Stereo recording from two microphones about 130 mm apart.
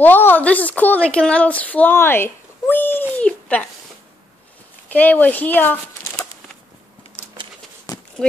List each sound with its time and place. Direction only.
0.0 s a woman's voice: 15° left (ahead or behind)
4.8 s speech: 15° left (ahead or behind)
7.9 s a sound: 30° left (ahead or behind)